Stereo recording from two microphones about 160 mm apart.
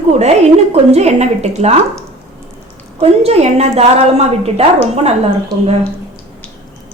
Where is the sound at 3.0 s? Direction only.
40° right (ahead or behind).